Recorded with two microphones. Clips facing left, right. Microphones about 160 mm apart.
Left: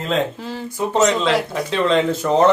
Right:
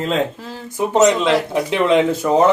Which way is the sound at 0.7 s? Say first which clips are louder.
Right 3 dB; 20° right (ahead or behind).